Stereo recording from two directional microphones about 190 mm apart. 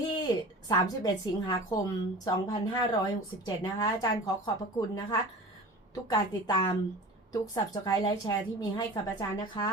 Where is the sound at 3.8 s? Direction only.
20° left (ahead or behind).